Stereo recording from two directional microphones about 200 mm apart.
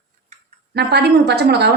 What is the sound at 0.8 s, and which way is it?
Speech, 55° right (ahead or behind).